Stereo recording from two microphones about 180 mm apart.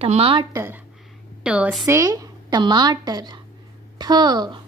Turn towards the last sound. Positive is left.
turn(degrees=-25)  # may be behind; listen again after turning